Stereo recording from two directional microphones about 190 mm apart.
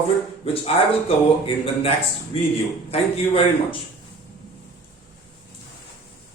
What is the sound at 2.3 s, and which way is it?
A man's voice, 30° left (ahead or behind).